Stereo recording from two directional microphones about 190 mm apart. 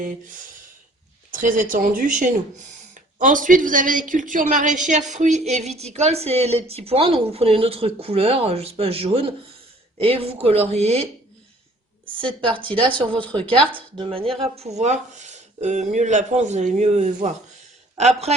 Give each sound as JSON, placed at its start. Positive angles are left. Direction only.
{"t": 0.0, "sound": "speech", "side_deg": -45}
{"t": 12.6, "sound": "speech", "side_deg": -25}
{"t": 14.3, "sound": "speech", "side_deg": 0}
{"t": 14.6, "sound": "a man's voice", "side_deg": -35}